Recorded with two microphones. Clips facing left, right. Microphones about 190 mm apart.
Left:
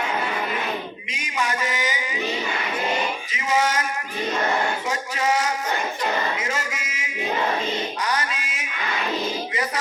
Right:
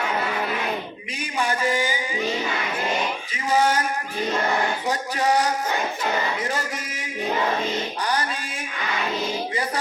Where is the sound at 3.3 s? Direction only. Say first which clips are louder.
Right 2 dB; 35° right (ahead or behind).